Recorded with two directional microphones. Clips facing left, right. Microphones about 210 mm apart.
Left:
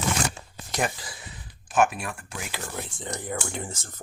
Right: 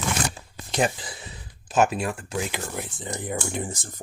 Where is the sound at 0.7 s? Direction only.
25° right (ahead or behind).